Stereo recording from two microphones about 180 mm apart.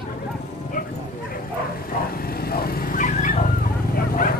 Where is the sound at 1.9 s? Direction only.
55° left (ahead or behind).